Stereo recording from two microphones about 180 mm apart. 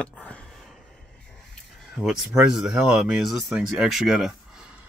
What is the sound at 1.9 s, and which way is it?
Speech, 5° right (ahead or behind).